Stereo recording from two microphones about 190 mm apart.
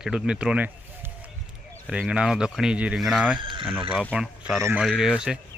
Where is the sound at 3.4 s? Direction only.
25° right (ahead or behind).